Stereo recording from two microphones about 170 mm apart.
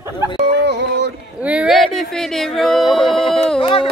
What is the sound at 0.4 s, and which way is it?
Music, 85° right.